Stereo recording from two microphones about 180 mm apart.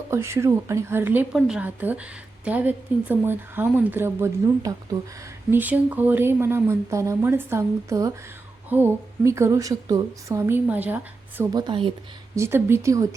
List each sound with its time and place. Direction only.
0.1 s a woman's voice: 15° right (ahead or behind)
11.5 s speech: 25° right (ahead or behind)
12.4 s a woman's voice: 15° right (ahead or behind)